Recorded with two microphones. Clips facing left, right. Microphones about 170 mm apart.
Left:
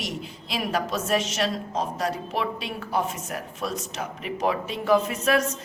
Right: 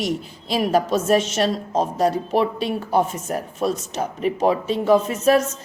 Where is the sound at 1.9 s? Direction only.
30° right (ahead or behind).